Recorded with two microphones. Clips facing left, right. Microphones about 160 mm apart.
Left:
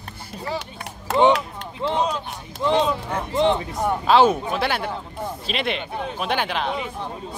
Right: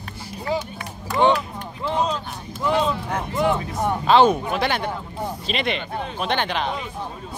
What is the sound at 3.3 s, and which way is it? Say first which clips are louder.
Speech: left 2 dB; 25° left (ahead or behind).